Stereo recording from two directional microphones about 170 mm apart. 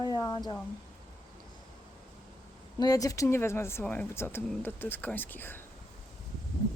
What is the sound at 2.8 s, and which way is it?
Speech, 20° left (ahead or behind).